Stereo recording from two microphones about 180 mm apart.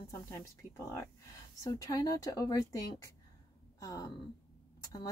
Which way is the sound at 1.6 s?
20° left (ahead or behind).